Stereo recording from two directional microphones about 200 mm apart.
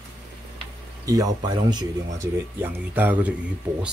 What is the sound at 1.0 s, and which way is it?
Speech, 20° right (ahead or behind).